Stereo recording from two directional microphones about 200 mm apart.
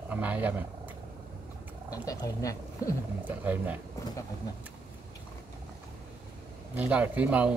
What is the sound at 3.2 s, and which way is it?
Speech, 10° right (ahead or behind).